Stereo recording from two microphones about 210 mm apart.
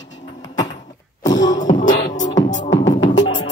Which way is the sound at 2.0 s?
35° left (ahead or behind).